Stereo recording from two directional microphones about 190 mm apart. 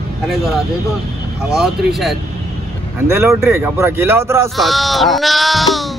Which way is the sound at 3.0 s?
15° right (ahead or behind).